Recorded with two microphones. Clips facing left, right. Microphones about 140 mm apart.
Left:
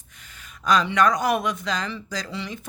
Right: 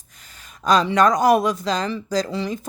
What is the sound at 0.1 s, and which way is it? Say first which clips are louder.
Speech: even; 40° right (ahead or behind).